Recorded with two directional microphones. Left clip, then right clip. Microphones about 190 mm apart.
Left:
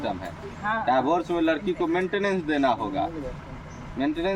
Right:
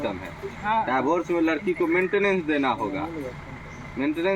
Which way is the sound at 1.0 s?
5° left (ahead or behind).